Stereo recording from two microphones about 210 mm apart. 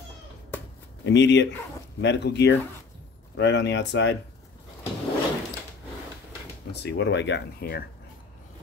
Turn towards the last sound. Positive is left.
turn(degrees=50)  # may be behind; listen again after turning